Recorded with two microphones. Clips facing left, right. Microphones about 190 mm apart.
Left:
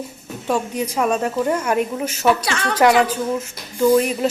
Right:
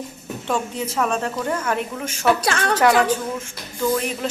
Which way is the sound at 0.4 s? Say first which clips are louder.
Left 3 dB; 10° left (ahead or behind).